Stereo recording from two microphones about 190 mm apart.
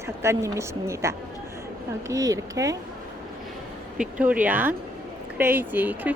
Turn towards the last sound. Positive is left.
turn(degrees=-10)  # may be behind; listen again after turning